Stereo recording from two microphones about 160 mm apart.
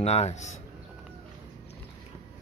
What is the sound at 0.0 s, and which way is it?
Speech, 40° left (ahead or behind).